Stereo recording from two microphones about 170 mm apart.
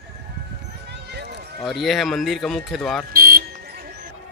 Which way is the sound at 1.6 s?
Centre (ahead or behind).